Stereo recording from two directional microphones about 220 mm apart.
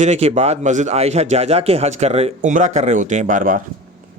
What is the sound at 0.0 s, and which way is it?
Speech, 30° right (ahead or behind).